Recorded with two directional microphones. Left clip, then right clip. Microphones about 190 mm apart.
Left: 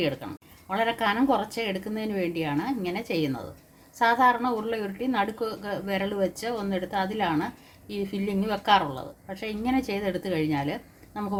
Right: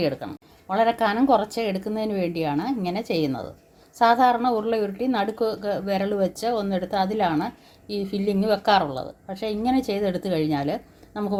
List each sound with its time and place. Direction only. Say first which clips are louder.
0.7 s a woman's voice: right 4 dB; 30° right (ahead or behind)